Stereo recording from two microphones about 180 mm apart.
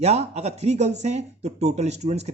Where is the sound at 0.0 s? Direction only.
35° right (ahead or behind).